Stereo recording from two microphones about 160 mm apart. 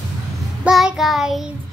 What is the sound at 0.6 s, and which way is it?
Child singing, 5° right (ahead or behind).